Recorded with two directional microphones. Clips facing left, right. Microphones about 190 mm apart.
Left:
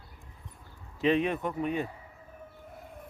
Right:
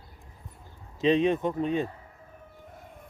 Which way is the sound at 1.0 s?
20° right (ahead or behind).